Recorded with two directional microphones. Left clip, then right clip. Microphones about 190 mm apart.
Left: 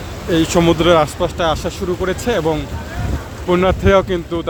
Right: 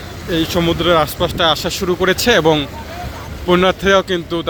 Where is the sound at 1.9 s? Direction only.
10° right (ahead or behind).